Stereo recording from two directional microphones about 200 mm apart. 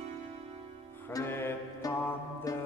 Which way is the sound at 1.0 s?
15° left (ahead or behind).